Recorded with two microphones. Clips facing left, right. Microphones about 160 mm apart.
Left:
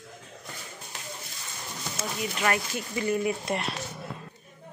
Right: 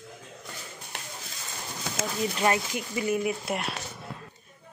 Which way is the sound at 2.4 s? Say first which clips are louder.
Right 1 dB; 20° right (ahead or behind).